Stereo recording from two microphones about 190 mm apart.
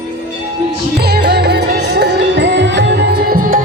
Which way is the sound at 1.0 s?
60° right (ahead or behind).